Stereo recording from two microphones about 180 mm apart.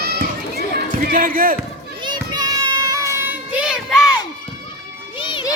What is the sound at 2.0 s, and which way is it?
Children playing, 25° right (ahead or behind).